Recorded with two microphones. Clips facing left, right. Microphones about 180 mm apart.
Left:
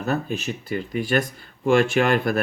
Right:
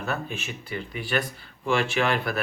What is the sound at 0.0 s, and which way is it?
Speech, 40° left (ahead or behind).